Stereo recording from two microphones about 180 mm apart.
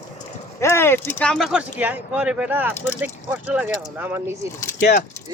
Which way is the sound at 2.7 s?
15° left (ahead or behind).